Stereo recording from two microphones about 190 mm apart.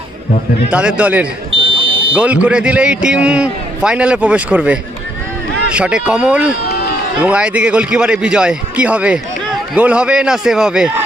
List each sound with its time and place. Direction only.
0.7 s a man's voice: 5° right (ahead or behind)
1.6 s smoke detector: 25° right (ahead or behind)
2.1 s a man's voice: 5° right (ahead or behind)